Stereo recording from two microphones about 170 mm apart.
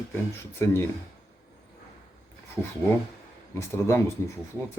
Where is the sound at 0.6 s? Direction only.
15° left (ahead or behind).